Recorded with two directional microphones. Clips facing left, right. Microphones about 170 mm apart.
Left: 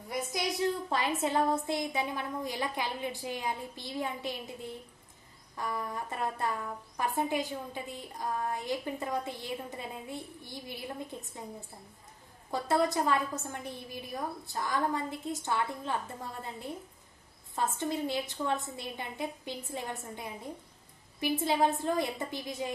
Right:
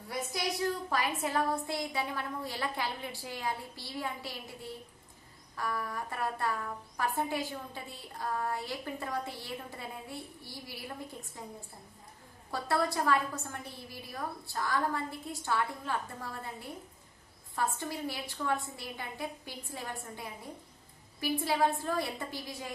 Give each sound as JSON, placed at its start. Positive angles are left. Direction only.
{"t": 0.9, "sound": "a woman's voice", "side_deg": 25}
{"t": 12.5, "sound": "a woman's voice", "side_deg": 20}